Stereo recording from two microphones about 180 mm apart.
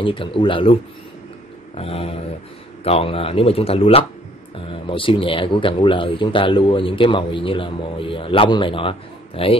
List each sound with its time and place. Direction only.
0.0 s speech: 30° left (ahead or behind)
1.8 s speech: 35° left (ahead or behind)